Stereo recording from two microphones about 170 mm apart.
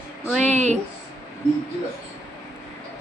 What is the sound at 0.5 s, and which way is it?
Speech, 40° right (ahead or behind).